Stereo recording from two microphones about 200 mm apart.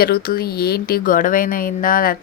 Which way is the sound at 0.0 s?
50° left (ahead or behind).